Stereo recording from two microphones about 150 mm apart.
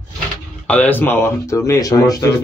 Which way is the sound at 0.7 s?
10° left (ahead or behind).